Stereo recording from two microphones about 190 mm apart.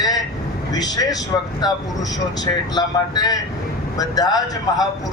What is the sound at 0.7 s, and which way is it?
Speech, 20° left (ahead or behind).